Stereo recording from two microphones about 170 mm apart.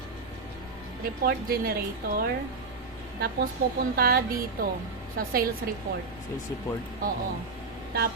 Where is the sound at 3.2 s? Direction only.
65° right (ahead or behind).